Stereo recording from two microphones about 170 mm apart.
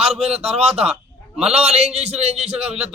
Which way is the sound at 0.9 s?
5° right (ahead or behind).